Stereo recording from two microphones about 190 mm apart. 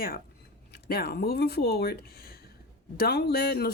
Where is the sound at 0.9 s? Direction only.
55° left (ahead or behind).